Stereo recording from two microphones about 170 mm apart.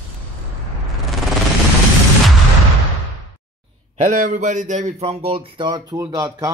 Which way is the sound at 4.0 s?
50° right (ahead or behind).